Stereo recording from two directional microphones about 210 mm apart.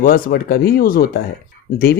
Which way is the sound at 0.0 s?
40° left (ahead or behind).